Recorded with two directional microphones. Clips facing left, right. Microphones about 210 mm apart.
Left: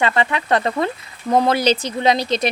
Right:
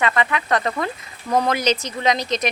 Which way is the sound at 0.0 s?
30° left (ahead or behind).